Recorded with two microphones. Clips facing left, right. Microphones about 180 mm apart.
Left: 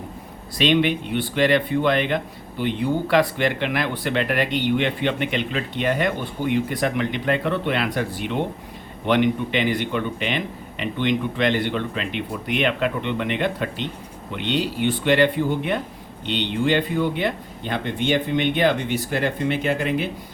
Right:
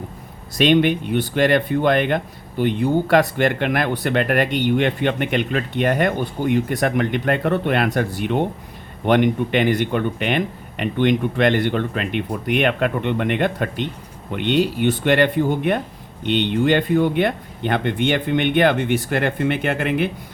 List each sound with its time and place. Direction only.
0.5 s speech: 50° right (ahead or behind)